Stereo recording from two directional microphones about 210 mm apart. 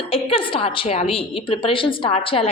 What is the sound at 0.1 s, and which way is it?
A woman's voice, 25° left (ahead or behind).